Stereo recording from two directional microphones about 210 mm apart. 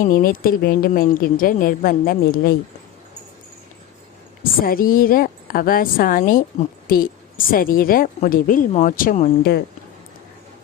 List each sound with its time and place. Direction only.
0.0 s a woman's voice: 40° left (ahead or behind)
4.6 s a woman's voice: 40° left (ahead or behind)